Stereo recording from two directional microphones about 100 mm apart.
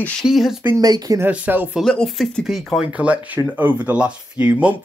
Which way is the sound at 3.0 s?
15° right (ahead or behind).